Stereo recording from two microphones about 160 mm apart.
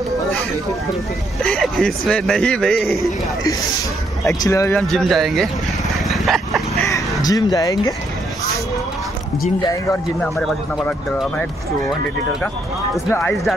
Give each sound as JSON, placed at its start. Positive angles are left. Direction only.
{"t": 1.4, "sound": "a man's voice", "side_deg": 5}
{"t": 4.3, "sound": "speech", "side_deg": 20}
{"t": 4.7, "sound": "a man's voice", "side_deg": 0}
{"t": 6.0, "sound": "a sound", "side_deg": 0}
{"t": 6.9, "sound": "speech", "side_deg": 25}
{"t": 9.6, "sound": "speech", "side_deg": 25}
{"t": 10.2, "sound": "a man's voice", "side_deg": 0}